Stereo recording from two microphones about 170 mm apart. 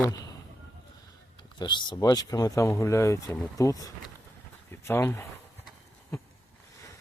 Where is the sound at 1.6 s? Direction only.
25° left (ahead or behind).